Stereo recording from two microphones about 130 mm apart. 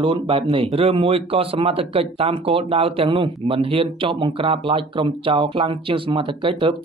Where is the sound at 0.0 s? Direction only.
40° right (ahead or behind).